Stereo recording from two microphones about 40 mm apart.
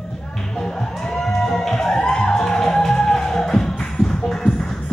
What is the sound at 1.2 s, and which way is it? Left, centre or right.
Music, centre.